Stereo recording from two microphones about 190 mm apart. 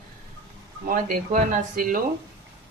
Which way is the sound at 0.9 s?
45° right (ahead or behind).